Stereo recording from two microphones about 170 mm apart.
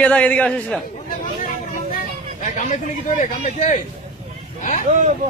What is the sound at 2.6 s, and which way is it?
A man's voice, 50° left (ahead or behind).